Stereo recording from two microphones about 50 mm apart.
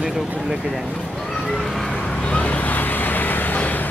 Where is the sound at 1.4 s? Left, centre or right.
Centre.